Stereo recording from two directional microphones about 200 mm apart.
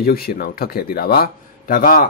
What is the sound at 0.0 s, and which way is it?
Speech, 50° left (ahead or behind).